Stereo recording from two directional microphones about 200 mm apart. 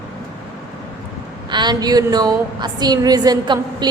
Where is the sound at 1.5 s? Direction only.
20° right (ahead or behind).